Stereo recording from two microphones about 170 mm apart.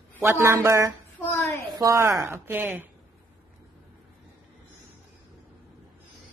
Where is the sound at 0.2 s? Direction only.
15° right (ahead or behind).